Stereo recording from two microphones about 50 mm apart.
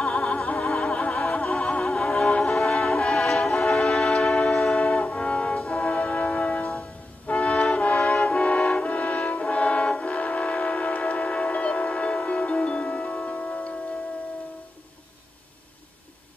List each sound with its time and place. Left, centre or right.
0.0 s opera: centre
1.0 s music: centre
1.9 s music: centre
5.6 s brass instrument: centre
7.2 s music: left
7.7 s brass instrument: left